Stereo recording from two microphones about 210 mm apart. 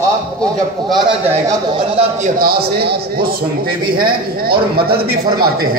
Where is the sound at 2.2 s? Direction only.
45° right (ahead or behind).